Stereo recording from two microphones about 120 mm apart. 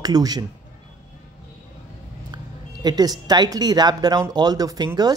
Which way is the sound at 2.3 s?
35° right (ahead or behind).